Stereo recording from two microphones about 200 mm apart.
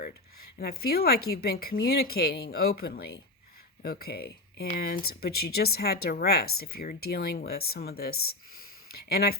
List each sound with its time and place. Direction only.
0.6 s a woman's voice: 50° left (ahead or behind)